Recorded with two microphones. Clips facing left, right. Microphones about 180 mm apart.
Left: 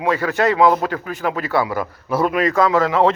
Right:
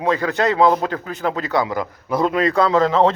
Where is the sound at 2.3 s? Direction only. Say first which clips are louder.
Even; 30° right (ahead or behind).